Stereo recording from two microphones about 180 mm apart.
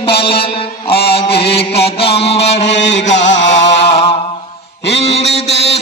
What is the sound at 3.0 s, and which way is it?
Chant, 40° left (ahead or behind).